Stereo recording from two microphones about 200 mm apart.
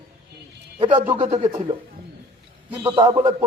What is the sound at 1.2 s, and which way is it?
Speech, 35° right (ahead or behind).